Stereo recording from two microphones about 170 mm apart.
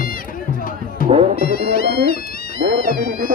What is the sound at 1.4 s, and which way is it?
Speech, 60° left (ahead or behind).